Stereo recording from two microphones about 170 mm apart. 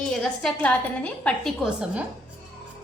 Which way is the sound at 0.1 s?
5° left (ahead or behind).